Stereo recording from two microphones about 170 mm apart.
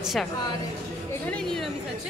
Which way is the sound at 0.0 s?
Centre (ahead or behind).